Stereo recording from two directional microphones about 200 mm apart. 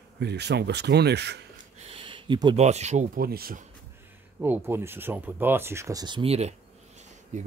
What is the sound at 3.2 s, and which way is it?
Speech, 50° right (ahead or behind).